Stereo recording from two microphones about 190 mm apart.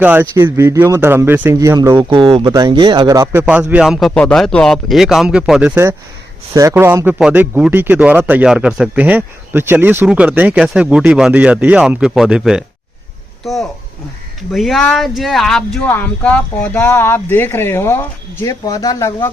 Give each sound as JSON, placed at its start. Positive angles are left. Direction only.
{"t": 0.0, "sound": "a man's voice", "side_deg": -10}
{"t": 2.0, "sound": "speech", "side_deg": -25}
{"t": 3.4, "sound": "a man's voice", "side_deg": -5}